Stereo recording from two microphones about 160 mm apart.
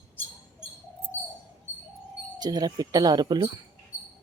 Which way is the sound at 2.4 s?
25° right (ahead or behind).